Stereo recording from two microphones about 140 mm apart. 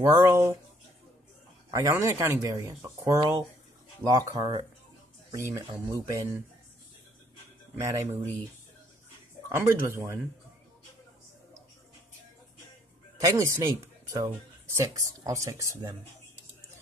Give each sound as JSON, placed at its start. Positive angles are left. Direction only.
{"t": 0.0, "sound": "speech", "side_deg": -20}
{"t": 1.7, "sound": "speech", "side_deg": -20}
{"t": 7.7, "sound": "speech", "side_deg": -20}
{"t": 9.5, "sound": "speech", "side_deg": -20}
{"t": 13.2, "sound": "speech", "side_deg": -20}